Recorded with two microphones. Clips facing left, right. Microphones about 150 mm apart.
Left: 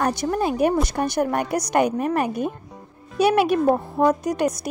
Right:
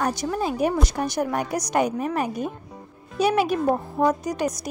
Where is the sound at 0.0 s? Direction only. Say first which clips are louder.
Left 3 dB; 55° left (ahead or behind).